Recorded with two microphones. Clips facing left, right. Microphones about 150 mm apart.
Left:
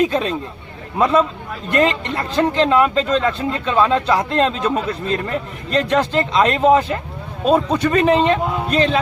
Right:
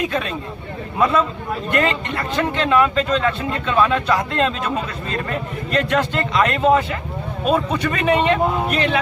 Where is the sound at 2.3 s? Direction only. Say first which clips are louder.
Left 3 dB; 35° left (ahead or behind).